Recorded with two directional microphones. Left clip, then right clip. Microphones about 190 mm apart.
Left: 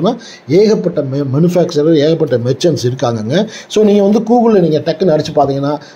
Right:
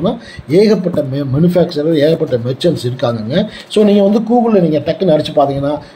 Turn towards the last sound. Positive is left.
turn(degrees=20)  # may be behind; listen again after turning